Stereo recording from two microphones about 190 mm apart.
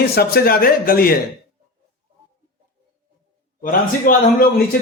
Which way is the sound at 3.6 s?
50° left (ahead or behind).